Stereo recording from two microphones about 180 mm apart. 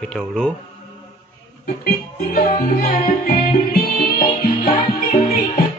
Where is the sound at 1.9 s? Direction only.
50° left (ahead or behind).